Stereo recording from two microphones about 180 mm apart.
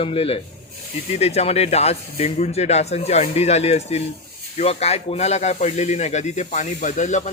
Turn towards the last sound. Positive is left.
turn(degrees=40)  # may be behind; listen again after turning